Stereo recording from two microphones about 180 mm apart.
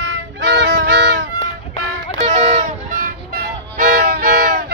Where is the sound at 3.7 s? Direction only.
55° right (ahead or behind).